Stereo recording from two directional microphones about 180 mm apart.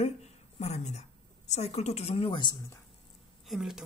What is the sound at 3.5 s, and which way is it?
Speech, centre (ahead or behind).